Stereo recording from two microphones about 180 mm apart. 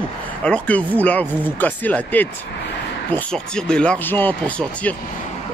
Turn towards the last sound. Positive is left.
turn(degrees=10)  # may be behind; listen again after turning